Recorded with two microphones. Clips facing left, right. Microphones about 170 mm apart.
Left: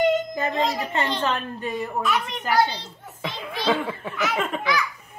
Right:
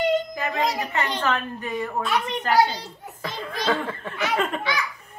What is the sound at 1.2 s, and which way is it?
Speech, 25° left (ahead or behind).